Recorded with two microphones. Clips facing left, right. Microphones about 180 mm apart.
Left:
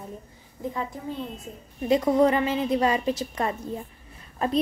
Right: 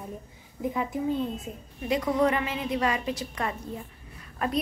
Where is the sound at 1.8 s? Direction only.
30° left (ahead or behind).